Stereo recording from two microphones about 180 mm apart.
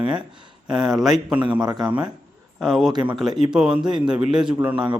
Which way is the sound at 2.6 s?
Centre (ahead or behind).